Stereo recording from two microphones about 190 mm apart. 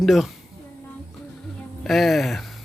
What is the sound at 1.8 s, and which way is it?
Speech, centre (ahead or behind).